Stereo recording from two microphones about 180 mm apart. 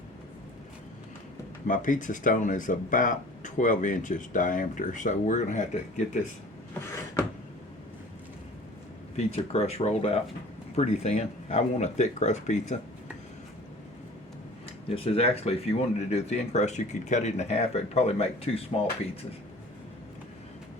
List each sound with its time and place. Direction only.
1.6 s speech: 45° left (ahead or behind)
9.1 s speech: 35° left (ahead or behind)
14.8 s speech: 35° left (ahead or behind)